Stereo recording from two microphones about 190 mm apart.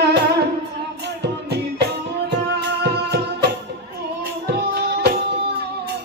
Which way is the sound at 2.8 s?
60° right (ahead or behind).